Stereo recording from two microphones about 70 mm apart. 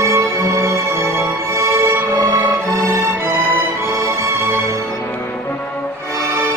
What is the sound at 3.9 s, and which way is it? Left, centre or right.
Music, right.